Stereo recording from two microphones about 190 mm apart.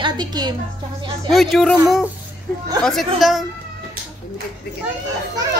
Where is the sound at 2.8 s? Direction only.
Centre (ahead or behind).